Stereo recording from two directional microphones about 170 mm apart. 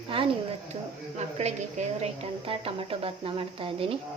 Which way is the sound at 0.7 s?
40° right (ahead or behind).